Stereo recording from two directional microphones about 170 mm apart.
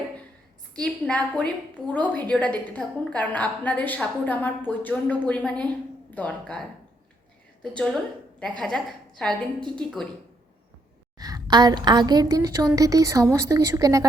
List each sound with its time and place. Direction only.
0.8 s a woman's voice: 5° left (ahead or behind)
7.6 s a woman's voice: 5° left (ahead or behind)
11.2 s a woman's voice: 20° right (ahead or behind)